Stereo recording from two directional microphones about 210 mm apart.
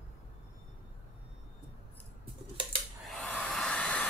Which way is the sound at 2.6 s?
25° right (ahead or behind).